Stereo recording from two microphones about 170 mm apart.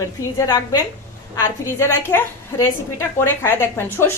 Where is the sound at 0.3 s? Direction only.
20° left (ahead or behind).